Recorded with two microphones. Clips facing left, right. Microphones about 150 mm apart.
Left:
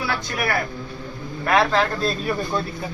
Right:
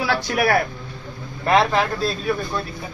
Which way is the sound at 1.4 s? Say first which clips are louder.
Right 1 dB; 25° right (ahead or behind).